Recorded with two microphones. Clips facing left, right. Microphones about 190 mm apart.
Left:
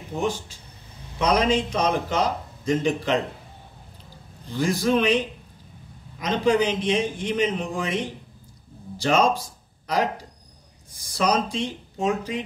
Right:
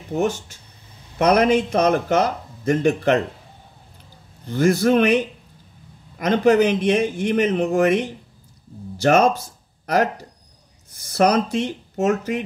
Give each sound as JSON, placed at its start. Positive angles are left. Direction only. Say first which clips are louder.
{"t": 1.1, "sound": "speech", "louder": "right 5 dB", "side_deg": -60}
{"t": 4.5, "sound": "speech", "louder": "right 5 dB", "side_deg": -60}
{"t": 9.0, "sound": "speech", "louder": "right 5 dB", "side_deg": -60}
{"t": 11.0, "sound": "speech", "louder": "right 5 dB", "side_deg": -60}